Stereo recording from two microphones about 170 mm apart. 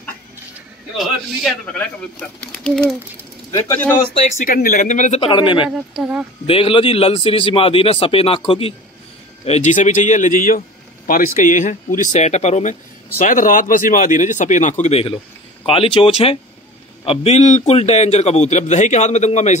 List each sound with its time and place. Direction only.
0.9 s speech: centre (ahead or behind)
3.5 s a man's voice: 15° left (ahead or behind)
4.5 s speech: 55° left (ahead or behind)
5.2 s speech: 30° left (ahead or behind)
5.9 s speech: 5° right (ahead or behind)
6.4 s a man's voice: 35° left (ahead or behind)